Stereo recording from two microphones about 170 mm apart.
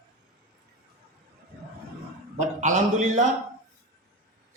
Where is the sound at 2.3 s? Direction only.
45° right (ahead or behind).